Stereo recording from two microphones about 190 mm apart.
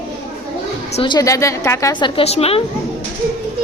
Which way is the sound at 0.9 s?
25° left (ahead or behind).